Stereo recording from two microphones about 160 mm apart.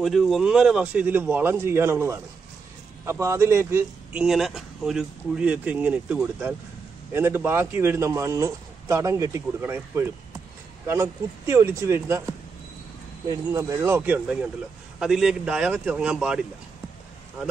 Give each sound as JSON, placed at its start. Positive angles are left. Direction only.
{"t": 0.0, "sound": "a man's voice", "side_deg": 0}
{"t": 4.2, "sound": "a man's voice", "side_deg": 0}
{"t": 13.3, "sound": "a man's voice", "side_deg": -20}